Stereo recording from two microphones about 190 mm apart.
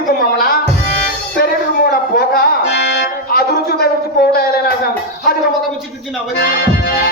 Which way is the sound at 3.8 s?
55° left (ahead or behind).